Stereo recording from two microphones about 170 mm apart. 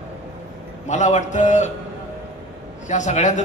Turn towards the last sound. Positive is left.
turn(degrees=45)  # may be behind; listen again after turning